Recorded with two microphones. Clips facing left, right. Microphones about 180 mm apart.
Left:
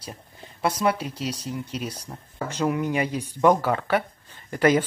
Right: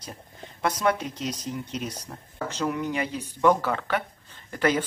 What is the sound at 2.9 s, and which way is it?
Speech, 10° left (ahead or behind).